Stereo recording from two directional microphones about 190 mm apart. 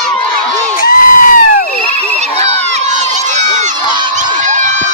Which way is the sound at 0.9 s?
45° left (ahead or behind).